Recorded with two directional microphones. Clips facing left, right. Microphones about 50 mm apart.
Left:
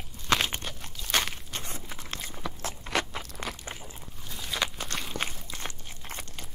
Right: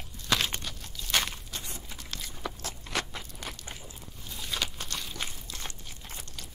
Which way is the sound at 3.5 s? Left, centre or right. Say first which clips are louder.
Left 3 dB; left.